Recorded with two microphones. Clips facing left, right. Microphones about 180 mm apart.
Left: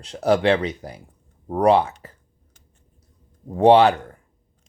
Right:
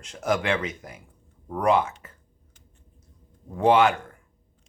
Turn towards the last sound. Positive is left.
turn(degrees=35)  # may be behind; listen again after turning